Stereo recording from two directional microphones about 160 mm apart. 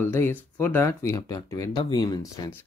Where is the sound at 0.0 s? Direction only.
15° left (ahead or behind).